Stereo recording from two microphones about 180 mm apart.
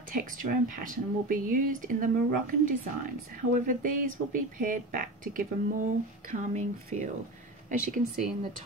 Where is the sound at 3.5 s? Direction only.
50° right (ahead or behind).